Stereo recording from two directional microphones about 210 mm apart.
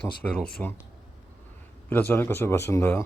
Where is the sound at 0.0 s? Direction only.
5° left (ahead or behind).